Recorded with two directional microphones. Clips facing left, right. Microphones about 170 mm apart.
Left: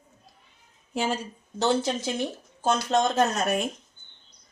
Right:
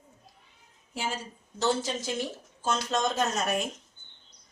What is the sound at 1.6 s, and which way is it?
A woman's voice, 65° left (ahead or behind).